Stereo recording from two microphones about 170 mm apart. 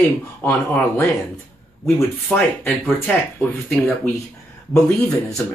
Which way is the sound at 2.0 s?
10° left (ahead or behind).